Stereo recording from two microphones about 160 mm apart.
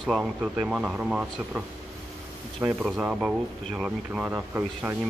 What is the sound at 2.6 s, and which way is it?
Speech, 15° right (ahead or behind).